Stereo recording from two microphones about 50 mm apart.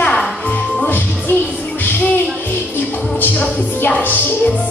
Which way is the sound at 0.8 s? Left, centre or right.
Left.